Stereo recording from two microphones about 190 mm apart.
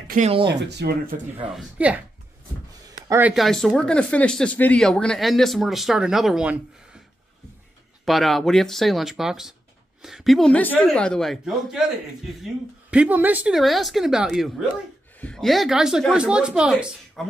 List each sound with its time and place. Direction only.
0.1 s speech: 35° right (ahead or behind)
0.7 s speech: 60° right (ahead or behind)
1.5 s speech: 5° right (ahead or behind)
8.0 s speech: centre (ahead or behind)